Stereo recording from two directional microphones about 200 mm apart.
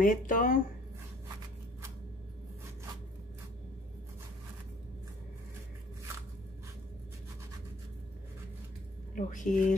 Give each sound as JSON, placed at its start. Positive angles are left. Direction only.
{"t": 0.0, "sound": "speech", "side_deg": 40}
{"t": 9.1, "sound": "speech", "side_deg": 40}